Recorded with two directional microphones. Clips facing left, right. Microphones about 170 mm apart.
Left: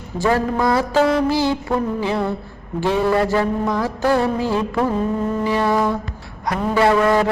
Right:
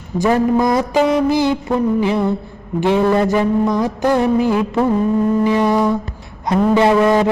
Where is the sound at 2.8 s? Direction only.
20° right (ahead or behind).